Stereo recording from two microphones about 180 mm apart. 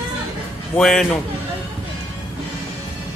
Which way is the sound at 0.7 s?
5° left (ahead or behind).